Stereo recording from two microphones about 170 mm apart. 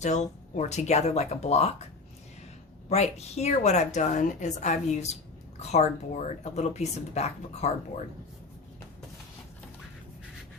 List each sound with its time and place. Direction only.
0.0 s a woman's voice: 45° left (ahead or behind)
2.9 s a woman's voice: 40° left (ahead or behind)